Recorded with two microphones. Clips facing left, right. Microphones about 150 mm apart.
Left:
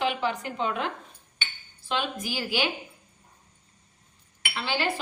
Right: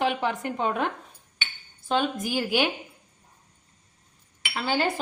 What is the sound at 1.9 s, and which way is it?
Speech, 45° right (ahead or behind).